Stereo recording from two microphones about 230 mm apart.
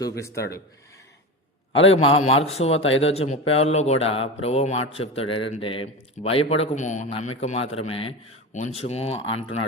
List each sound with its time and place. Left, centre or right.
0.0 s speech: centre
1.7 s a man's voice: left
2.0 s a man's voice: left
2.6 s speech: left
3.1 s a man's voice: left